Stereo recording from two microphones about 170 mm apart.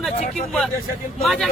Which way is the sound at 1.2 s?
Centre (ahead or behind).